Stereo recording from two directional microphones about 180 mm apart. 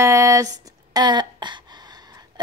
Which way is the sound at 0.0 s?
15° right (ahead or behind).